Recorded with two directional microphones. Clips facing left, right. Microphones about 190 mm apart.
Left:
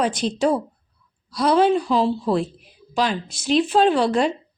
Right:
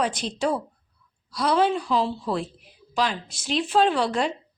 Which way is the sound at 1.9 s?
45° left (ahead or behind).